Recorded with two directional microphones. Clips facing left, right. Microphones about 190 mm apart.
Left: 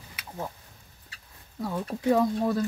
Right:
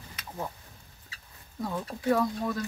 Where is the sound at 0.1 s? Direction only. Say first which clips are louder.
Left 1 dB; 5° left (ahead or behind).